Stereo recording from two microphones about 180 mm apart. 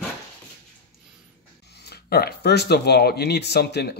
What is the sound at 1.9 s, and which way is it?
Speech, 60° left (ahead or behind).